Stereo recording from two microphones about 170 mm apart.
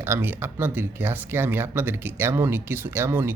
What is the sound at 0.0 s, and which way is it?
Speech, 15° right (ahead or behind).